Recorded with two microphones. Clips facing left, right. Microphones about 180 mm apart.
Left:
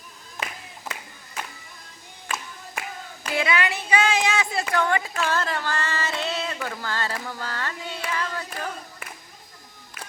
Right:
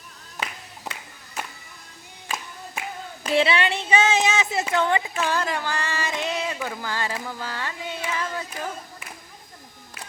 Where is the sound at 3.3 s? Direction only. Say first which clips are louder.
Right 3 dB; 30° right (ahead or behind).